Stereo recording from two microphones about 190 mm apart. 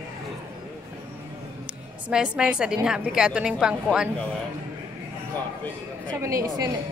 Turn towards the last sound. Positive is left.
turn(degrees=-15)  # may be behind; listen again after turning